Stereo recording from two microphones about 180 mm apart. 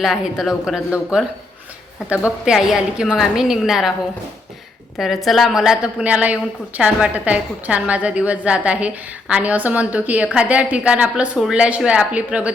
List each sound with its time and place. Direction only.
0.0 s a woman's voice: centre (ahead or behind)
2.4 s a woman's voice: 5° right (ahead or behind)
4.9 s a woman's voice: centre (ahead or behind)